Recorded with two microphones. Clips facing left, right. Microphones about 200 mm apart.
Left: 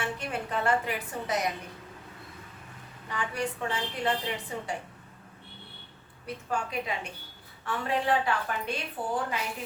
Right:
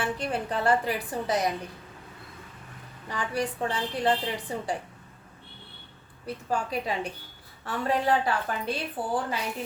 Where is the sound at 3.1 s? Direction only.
35° right (ahead or behind).